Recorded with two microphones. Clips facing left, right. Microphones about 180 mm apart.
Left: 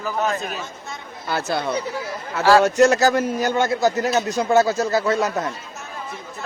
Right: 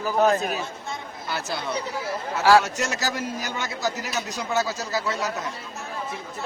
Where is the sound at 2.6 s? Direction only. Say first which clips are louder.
Left 13 dB; 60° left (ahead or behind).